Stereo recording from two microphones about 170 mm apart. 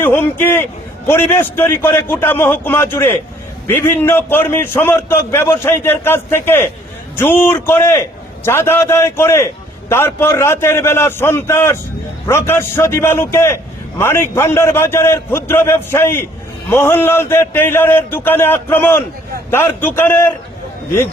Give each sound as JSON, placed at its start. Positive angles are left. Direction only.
{"t": 0.0, "sound": "a man's voice", "side_deg": 15}